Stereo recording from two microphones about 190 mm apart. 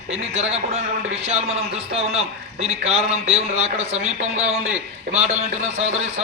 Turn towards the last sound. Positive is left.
turn(degrees=-35)  # may be behind; listen again after turning